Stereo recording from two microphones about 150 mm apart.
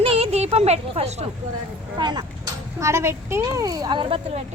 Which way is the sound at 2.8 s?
15° right (ahead or behind).